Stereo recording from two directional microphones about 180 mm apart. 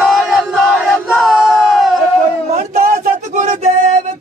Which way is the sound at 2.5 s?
40° right (ahead or behind).